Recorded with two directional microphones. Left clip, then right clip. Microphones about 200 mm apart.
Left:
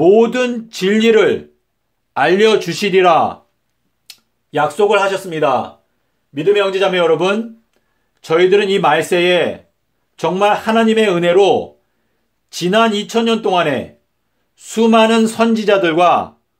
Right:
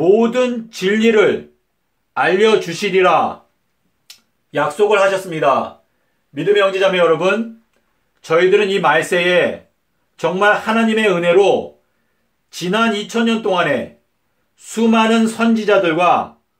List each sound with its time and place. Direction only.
0.0 s speech: 45° left (ahead or behind)